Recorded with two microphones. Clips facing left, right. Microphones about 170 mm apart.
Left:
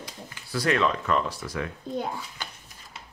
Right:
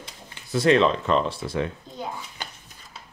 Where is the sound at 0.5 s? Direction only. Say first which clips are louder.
Right 6 dB; 25° right (ahead or behind).